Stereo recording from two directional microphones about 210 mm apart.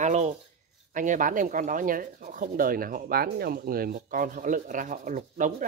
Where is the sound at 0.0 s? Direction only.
30° right (ahead or behind).